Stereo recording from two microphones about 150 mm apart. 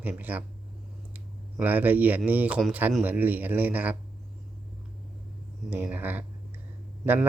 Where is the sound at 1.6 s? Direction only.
10° right (ahead or behind).